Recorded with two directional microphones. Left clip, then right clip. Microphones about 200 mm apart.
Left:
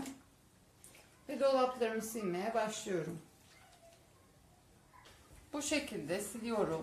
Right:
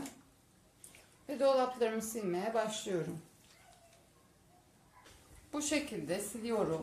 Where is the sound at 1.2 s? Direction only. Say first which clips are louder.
Right 1 dB; 20° right (ahead or behind).